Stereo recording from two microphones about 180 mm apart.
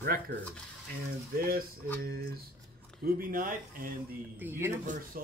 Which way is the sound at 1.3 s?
55° right (ahead or behind).